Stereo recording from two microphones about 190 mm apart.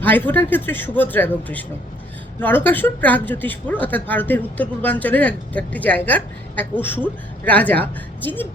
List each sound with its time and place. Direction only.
0.0 s speech: 10° left (ahead or behind)